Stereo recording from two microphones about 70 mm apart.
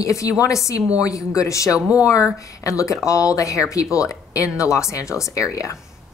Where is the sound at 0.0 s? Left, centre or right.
Left.